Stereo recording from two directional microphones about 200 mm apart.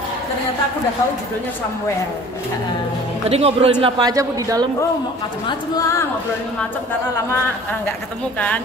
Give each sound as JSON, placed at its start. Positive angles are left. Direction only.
{"t": 3.3, "sound": "speech", "side_deg": -30}
{"t": 3.8, "sound": "speech", "side_deg": -20}
{"t": 5.5, "sound": "a woman's voice", "side_deg": 20}